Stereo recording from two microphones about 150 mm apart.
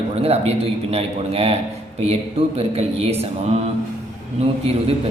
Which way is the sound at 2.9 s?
45° right (ahead or behind).